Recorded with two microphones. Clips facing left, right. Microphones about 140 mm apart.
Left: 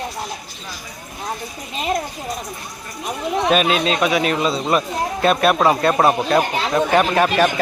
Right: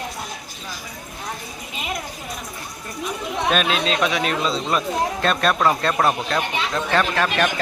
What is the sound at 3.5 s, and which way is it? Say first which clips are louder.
Speech: left 3 dB; 5° left (ahead or behind).